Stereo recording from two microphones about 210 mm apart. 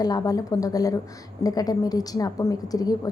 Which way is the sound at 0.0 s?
20° left (ahead or behind).